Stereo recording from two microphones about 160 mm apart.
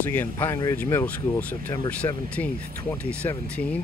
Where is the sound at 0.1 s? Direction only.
15° left (ahead or behind).